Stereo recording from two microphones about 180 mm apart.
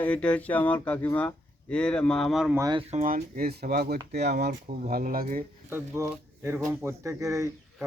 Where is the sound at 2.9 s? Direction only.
45° right (ahead or behind).